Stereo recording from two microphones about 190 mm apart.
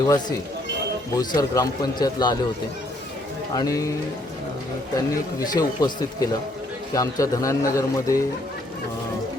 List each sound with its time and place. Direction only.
0.0 s speech: 20° left (ahead or behind)
3.5 s a man's voice: 20° left (ahead or behind)
4.9 s a man's voice: 20° left (ahead or behind)